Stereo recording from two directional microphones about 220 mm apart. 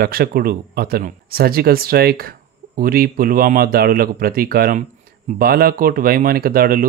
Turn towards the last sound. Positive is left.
turn(degrees=-40)  # may be behind; listen again after turning